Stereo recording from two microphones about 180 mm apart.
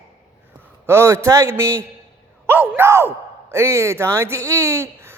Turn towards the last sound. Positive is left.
turn(degrees=-15)  # may be behind; listen again after turning